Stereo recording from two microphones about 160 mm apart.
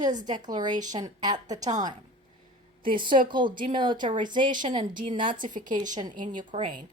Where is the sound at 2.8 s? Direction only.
30° right (ahead or behind).